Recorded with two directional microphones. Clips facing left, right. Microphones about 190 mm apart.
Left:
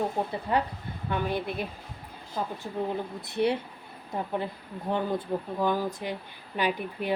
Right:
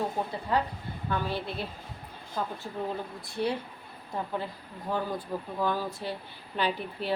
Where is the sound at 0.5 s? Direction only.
20° left (ahead or behind).